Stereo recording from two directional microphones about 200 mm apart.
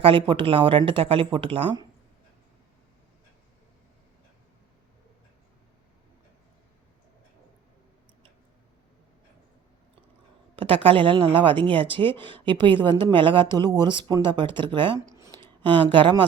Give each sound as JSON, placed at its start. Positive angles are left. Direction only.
{"t": 0.0, "sound": "speech", "side_deg": -25}
{"t": 10.5, "sound": "speech", "side_deg": -25}